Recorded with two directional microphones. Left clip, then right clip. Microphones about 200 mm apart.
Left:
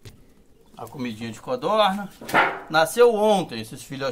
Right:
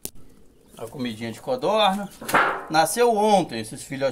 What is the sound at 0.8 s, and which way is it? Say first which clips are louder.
Speech: right 1 dB; 20° left (ahead or behind).